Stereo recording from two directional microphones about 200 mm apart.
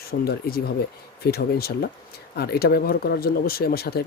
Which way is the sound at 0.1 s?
50° left (ahead or behind).